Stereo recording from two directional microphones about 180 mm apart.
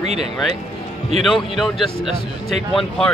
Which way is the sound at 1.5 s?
Centre (ahead or behind).